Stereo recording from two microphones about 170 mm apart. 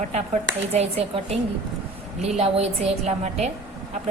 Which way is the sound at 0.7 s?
40° right (ahead or behind).